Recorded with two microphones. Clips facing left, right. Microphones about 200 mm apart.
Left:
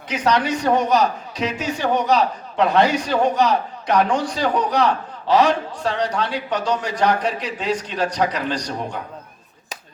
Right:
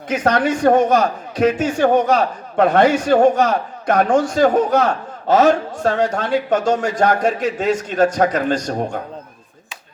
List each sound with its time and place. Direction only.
0.1 s a man's voice: 50° right (ahead or behind)